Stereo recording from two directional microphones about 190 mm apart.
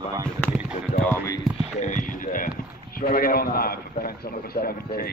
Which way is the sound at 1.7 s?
40° left (ahead or behind).